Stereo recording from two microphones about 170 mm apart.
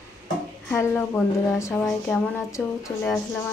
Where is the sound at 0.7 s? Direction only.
10° left (ahead or behind).